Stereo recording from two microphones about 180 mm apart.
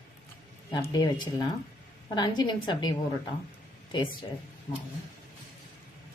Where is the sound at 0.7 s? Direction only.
25° left (ahead or behind).